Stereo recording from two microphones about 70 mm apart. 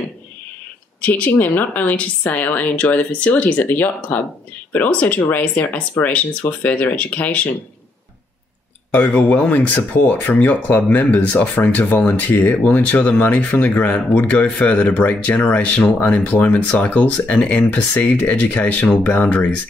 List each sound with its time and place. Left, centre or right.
1.0 s speech: left
8.9 s speech: left